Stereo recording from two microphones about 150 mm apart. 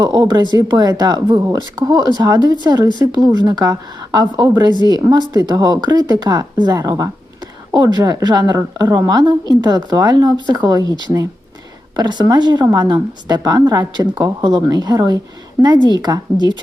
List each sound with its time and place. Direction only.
0.0 s a woman's voice: 30° right (ahead or behind)